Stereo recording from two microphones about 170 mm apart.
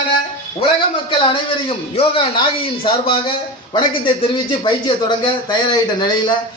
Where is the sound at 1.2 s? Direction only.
30° left (ahead or behind).